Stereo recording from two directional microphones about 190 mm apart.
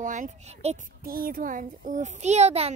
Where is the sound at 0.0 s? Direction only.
40° right (ahead or behind).